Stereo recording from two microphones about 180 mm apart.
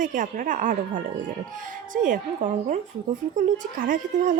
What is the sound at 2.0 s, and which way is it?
A woman's voice, 45° right (ahead or behind).